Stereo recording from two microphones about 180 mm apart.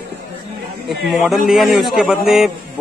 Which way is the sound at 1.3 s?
Centre (ahead or behind).